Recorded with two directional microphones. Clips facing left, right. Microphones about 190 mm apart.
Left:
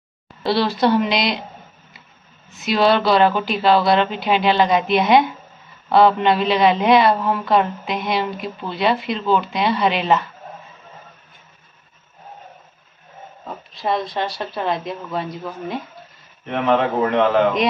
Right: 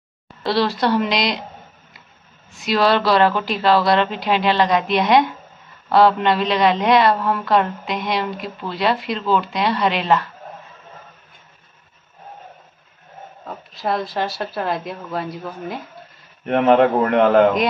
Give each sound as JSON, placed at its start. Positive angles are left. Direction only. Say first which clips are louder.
{"t": 0.4, "sound": "a woman's voice", "louder": "left 1 dB", "side_deg": 0}
{"t": 2.5, "sound": "a woman's voice", "louder": "left 1 dB", "side_deg": 0}
{"t": 13.5, "sound": "a woman's voice", "louder": "left 1 dB", "side_deg": 0}
{"t": 16.4, "sound": "a man's voice", "louder": "right 4 dB", "side_deg": -50}